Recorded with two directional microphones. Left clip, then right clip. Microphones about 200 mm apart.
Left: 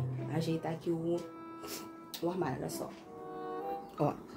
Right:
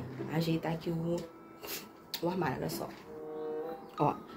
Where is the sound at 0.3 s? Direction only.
Centre (ahead or behind).